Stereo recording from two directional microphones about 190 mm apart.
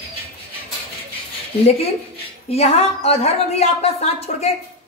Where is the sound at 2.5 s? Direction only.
35° left (ahead or behind).